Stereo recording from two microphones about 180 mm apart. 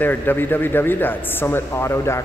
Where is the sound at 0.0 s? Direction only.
10° left (ahead or behind).